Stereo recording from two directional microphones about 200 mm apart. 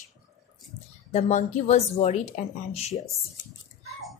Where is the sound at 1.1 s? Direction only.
35° left (ahead or behind).